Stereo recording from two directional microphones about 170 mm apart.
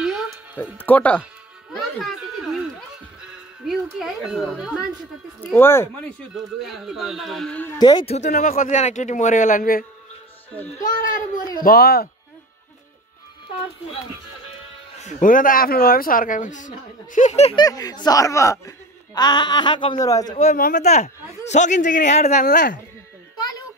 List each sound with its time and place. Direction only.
0.0 s music: 5° right (ahead or behind)
0.7 s speech: 10° left (ahead or behind)
1.7 s a sound: centre (ahead or behind)
3.2 s speech: centre (ahead or behind)
5.4 s speech: 10° left (ahead or behind)
6.3 s a man's voice: centre (ahead or behind)
7.8 s speech: 25° left (ahead or behind)
8.3 s a man's voice: 50° left (ahead or behind)
11.5 s speech: 60° left (ahead or behind)
15.0 s a man's voice: 45° left (ahead or behind)
17.6 s speech: 20° left (ahead or behind)
20.5 s speech: 55° left (ahead or behind)
20.8 s a man's voice: 40° left (ahead or behind)